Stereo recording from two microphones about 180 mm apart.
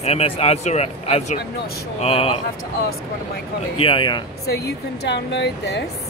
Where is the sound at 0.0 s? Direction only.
35° left (ahead or behind).